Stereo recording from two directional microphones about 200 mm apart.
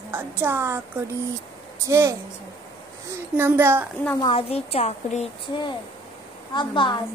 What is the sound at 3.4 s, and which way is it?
Speech, 10° right (ahead or behind).